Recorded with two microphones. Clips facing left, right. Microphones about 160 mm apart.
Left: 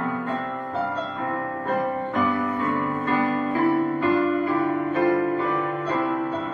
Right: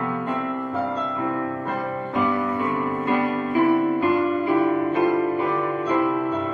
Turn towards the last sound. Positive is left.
turn(degrees=-20)  # may be behind; listen again after turning